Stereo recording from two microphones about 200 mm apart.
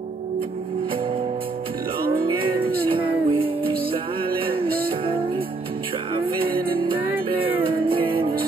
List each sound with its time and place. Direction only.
2.2 s music: 25° right (ahead or behind)
4.6 s music: 45° right (ahead or behind)
6.5 s music: 25° right (ahead or behind)